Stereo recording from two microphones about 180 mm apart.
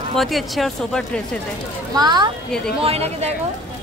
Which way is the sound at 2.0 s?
25° right (ahead or behind).